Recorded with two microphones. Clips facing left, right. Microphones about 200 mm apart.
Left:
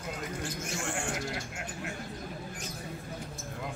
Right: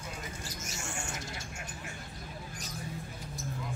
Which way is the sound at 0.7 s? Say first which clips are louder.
Left 6 dB; 60° left (ahead or behind).